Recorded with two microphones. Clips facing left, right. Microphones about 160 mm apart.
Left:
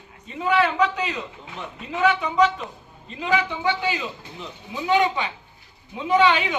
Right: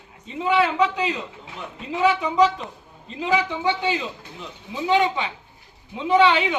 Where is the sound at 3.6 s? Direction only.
25° right (ahead or behind).